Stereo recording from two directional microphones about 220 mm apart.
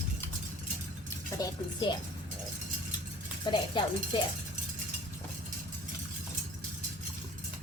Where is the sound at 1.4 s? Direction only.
20° left (ahead or behind).